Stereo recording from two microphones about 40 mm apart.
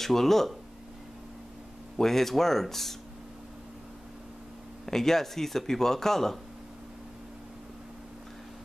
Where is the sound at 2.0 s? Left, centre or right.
Centre.